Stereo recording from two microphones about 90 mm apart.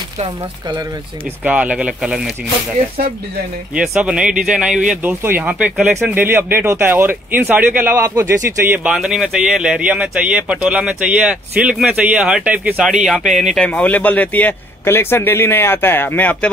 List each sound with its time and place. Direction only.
1.4 s speech: 15° right (ahead or behind)
3.7 s speech: 10° right (ahead or behind)
5.2 s speech: 20° right (ahead or behind)
8.9 s speech: 5° right (ahead or behind)
12.8 s speech: centre (ahead or behind)
13.7 s a man's voice: 15° left (ahead or behind)